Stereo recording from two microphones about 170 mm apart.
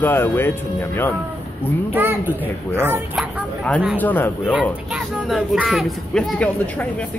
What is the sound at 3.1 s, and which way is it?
Speech, 5° left (ahead or behind).